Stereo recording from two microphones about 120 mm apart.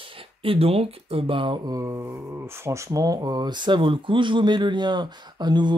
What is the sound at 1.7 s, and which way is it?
Speech, 25° right (ahead or behind).